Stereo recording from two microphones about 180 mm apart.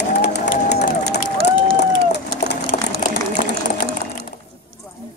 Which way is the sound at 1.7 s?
70° left (ahead or behind).